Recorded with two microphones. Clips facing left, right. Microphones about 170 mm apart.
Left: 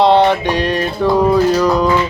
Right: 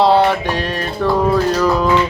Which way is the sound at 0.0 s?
5° right (ahead or behind).